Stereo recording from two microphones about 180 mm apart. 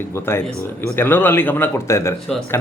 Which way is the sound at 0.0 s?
15° left (ahead or behind).